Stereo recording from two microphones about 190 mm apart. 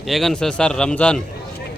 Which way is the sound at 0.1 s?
Centre (ahead or behind).